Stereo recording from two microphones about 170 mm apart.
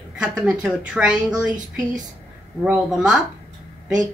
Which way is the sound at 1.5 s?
50° right (ahead or behind).